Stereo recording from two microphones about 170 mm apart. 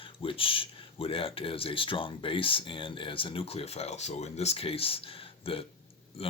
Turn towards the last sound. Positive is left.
turn(degrees=35)  # may be behind; listen again after turning